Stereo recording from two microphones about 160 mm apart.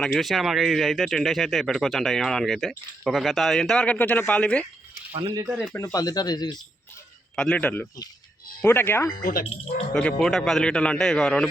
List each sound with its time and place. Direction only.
0.0 s speech: centre (ahead or behind)
5.7 s speech: 20° left (ahead or behind)
7.3 s a man's voice: 10° left (ahead or behind)
9.2 s speech: 65° left (ahead or behind)
9.9 s speech: 5° left (ahead or behind)